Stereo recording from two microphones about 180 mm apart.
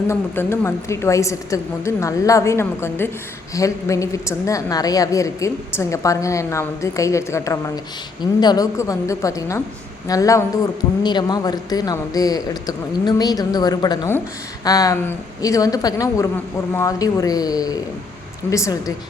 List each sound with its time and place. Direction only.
0.1 s a woman's voice: 15° left (ahead or behind)